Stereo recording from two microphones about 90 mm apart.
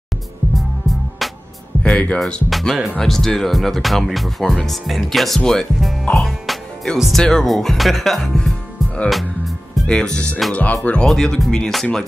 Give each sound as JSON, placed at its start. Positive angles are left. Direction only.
{"t": 0.6, "sound": "music", "side_deg": 0}
{"t": 1.8, "sound": "music", "side_deg": 15}
{"t": 2.1, "sound": "speech", "side_deg": 5}